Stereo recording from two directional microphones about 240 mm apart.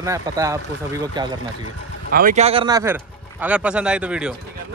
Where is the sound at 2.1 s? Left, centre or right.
Right; by 4.3 s centre.